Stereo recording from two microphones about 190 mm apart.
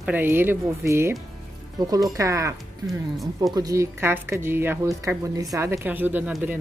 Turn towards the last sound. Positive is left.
turn(degrees=-10)  # may be behind; listen again after turning